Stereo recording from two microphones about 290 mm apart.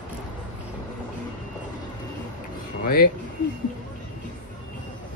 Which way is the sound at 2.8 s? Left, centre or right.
Left.